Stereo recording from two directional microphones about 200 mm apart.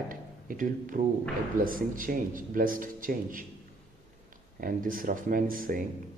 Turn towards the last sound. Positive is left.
turn(degrees=-45)  # may be behind; listen again after turning